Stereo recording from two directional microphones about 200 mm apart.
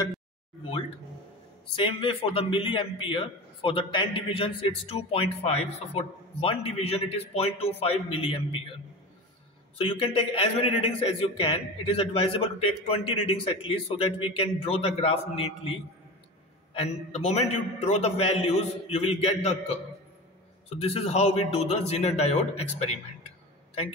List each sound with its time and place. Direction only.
0.7 s a sound: 30° left (ahead or behind)
1.8 s a man's voice: 25° left (ahead or behind)
9.8 s a man's voice: 30° left (ahead or behind)
20.8 s a man's voice: 30° left (ahead or behind)